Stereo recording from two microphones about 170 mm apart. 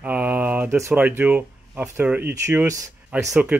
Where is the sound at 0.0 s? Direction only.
10° right (ahead or behind).